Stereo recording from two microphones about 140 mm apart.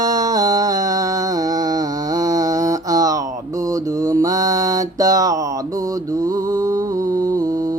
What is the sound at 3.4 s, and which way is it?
Mantra, 25° right (ahead or behind).